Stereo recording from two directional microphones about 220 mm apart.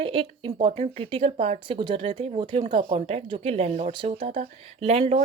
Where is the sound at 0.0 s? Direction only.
25° right (ahead or behind).